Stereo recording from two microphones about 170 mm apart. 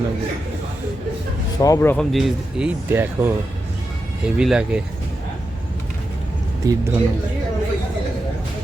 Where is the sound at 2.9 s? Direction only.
15° right (ahead or behind).